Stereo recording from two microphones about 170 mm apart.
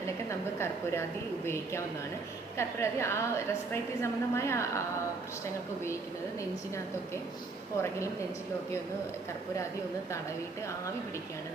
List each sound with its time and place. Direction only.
0.3 s a woman's voice: 15° left (ahead or behind)
2.6 s a woman's voice: 15° left (ahead or behind)